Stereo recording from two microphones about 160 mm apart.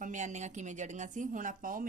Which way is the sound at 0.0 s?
50° right (ahead or behind).